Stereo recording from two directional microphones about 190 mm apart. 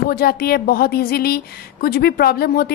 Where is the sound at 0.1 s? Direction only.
55° left (ahead or behind).